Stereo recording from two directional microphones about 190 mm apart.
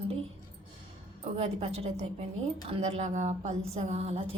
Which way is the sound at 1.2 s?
30° right (ahead or behind).